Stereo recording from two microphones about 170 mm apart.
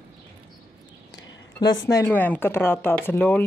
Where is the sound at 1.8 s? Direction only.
15° left (ahead or behind).